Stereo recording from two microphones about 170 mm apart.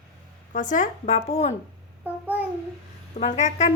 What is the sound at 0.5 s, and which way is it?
Speech, 50° left (ahead or behind).